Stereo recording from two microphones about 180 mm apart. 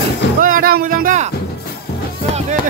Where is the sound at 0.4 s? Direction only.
50° right (ahead or behind).